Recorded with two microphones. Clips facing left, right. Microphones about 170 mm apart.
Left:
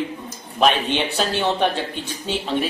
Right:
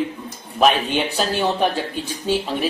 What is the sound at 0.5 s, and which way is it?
A man's voice, 5° right (ahead or behind).